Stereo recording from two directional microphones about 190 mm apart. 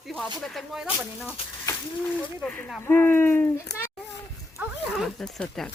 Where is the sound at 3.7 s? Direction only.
60° left (ahead or behind).